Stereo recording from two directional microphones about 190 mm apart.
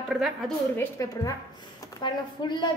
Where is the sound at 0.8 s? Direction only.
15° left (ahead or behind).